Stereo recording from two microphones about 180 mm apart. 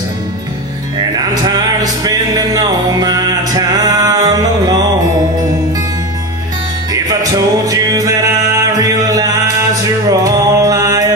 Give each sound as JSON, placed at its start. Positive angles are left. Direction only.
{"t": 0.9, "sound": "music", "side_deg": -25}
{"t": 6.9, "sound": "music", "side_deg": -20}